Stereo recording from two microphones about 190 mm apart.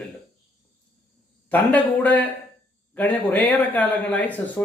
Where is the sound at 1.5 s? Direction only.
10° left (ahead or behind).